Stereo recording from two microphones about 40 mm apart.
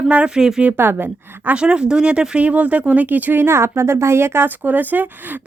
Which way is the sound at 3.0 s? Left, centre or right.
Right.